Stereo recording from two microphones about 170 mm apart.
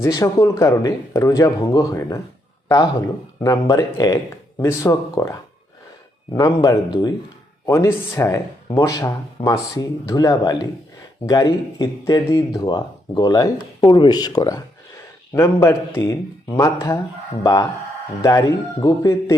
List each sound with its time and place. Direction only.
0.0 s speech: 20° left (ahead or behind)